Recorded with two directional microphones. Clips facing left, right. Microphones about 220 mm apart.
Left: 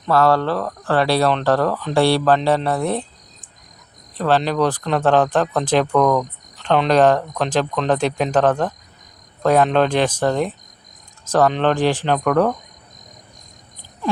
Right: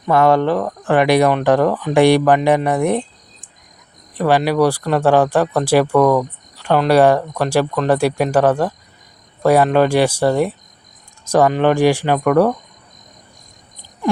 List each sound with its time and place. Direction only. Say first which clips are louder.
0.0 s speech: right 3 dB; 15° right (ahead or behind)
4.2 s speech: right 3 dB; 10° right (ahead or behind)